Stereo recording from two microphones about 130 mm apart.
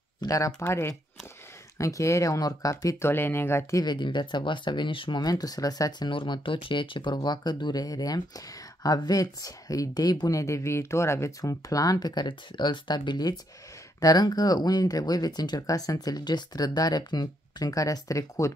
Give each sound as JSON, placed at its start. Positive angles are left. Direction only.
{"t": 0.2, "sound": "speech", "side_deg": 30}
{"t": 3.8, "sound": "speech", "side_deg": 35}